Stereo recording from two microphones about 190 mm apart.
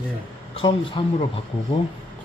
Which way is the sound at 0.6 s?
25° left (ahead or behind).